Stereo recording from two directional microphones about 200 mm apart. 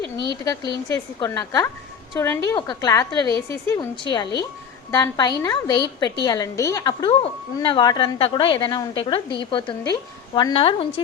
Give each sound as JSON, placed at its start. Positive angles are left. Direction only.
{"t": 0.4, "sound": "a woman's voice", "side_deg": 20}